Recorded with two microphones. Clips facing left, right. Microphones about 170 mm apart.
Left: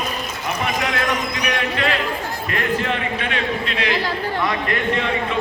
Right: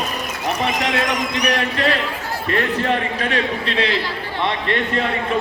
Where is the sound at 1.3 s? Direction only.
40° right (ahead or behind).